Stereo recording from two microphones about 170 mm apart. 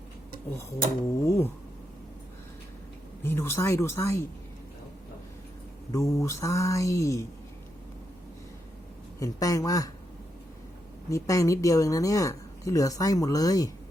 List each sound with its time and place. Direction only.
1.2 s mantra: 15° left (ahead or behind)
3.2 s mantra: 15° left (ahead or behind)
5.9 s mantra: 15° left (ahead or behind)
9.2 s speech: 20° left (ahead or behind)
11.1 s speech: 20° left (ahead or behind)